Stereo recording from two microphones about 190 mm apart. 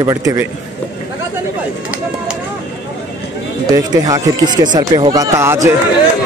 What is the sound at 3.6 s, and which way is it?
Speech, 20° right (ahead or behind).